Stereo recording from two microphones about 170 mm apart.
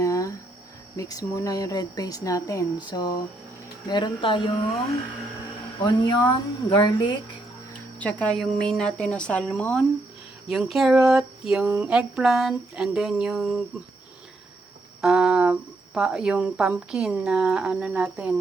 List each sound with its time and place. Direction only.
0.0 s cricket: 20° left (ahead or behind)
0.9 s speech: 20° left (ahead or behind)
5.8 s speech: 25° left (ahead or behind)
7.9 s speech: 10° left (ahead or behind)
15.0 s a sound: 5° right (ahead or behind)
16.0 s speech: 5° right (ahead or behind)